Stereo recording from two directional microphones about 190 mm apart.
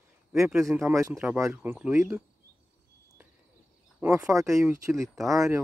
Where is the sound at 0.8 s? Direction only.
15° right (ahead or behind).